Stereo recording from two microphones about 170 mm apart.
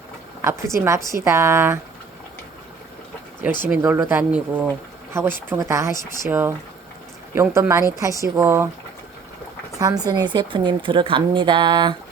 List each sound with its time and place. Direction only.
0.4 s a woman's voice: 15° right (ahead or behind)
3.7 s a woman's voice: 15° right (ahead or behind)
9.7 s a woman's voice: 20° right (ahead or behind)